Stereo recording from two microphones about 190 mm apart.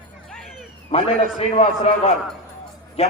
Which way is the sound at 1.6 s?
30° left (ahead or behind).